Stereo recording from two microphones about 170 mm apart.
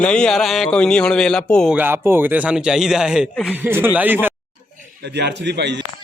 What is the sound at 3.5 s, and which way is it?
Speech, 10° right (ahead or behind).